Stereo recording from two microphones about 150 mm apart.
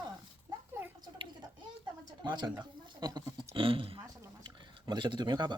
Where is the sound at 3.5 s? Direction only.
35° right (ahead or behind).